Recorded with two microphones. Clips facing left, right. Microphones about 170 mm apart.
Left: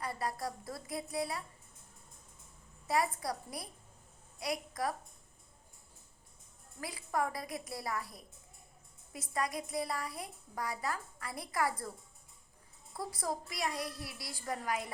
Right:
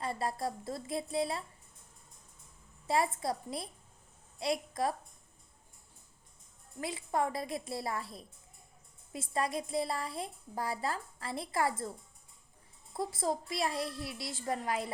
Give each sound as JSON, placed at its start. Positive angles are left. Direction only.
{"t": 0.0, "sound": "a woman's voice", "side_deg": -25}
{"t": 2.8, "sound": "a woman's voice", "side_deg": -25}
{"t": 6.7, "sound": "a woman's voice", "side_deg": -25}
{"t": 12.9, "sound": "a woman's voice", "side_deg": -25}